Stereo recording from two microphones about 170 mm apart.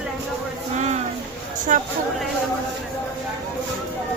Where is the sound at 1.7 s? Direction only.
45° right (ahead or behind).